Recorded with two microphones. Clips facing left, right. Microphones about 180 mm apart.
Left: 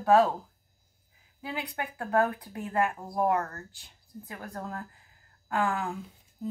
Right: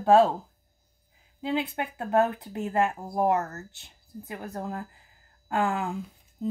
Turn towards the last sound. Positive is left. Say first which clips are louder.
# right 5 dB
turn(degrees=-20)  # may be behind; listen again after turning